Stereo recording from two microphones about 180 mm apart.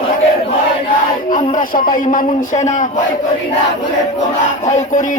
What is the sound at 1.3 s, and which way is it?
Speech, 45° left (ahead or behind).